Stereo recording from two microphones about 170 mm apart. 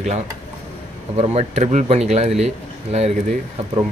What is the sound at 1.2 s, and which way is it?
A man's voice, 40° right (ahead or behind).